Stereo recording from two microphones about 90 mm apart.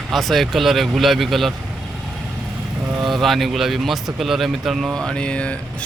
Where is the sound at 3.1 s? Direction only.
Centre (ahead or behind).